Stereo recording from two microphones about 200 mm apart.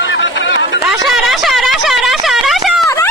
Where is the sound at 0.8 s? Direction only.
Centre (ahead or behind).